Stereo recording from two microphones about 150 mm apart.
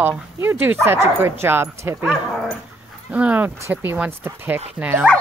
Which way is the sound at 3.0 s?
10° right (ahead or behind).